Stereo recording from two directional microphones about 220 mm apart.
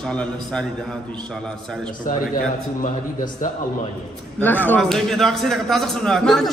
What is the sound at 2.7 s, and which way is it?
Speech, 35° left (ahead or behind).